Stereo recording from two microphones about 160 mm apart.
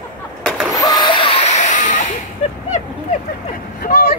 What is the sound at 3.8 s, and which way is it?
Vehicle, 80° left.